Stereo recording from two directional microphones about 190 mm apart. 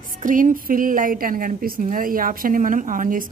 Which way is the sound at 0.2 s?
45° right (ahead or behind).